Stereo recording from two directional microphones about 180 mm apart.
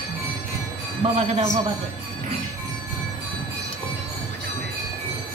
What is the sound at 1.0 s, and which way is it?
Speech, 30° right (ahead or behind).